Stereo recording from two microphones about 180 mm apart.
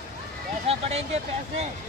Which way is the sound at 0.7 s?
35° right (ahead or behind).